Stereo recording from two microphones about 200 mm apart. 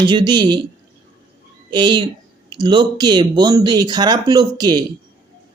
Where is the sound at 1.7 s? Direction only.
20° right (ahead or behind).